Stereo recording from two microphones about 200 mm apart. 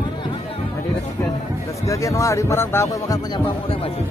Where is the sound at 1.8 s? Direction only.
15° left (ahead or behind).